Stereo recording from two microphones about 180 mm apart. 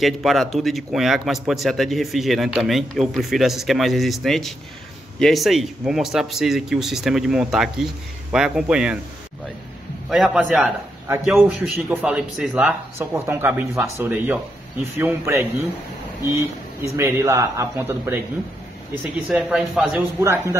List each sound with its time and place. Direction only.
0.0 s a man's voice: centre (ahead or behind)
10.0 s a man's voice: centre (ahead or behind)
19.3 s a man's voice: 5° right (ahead or behind)
20.2 s speech: 15° right (ahead or behind)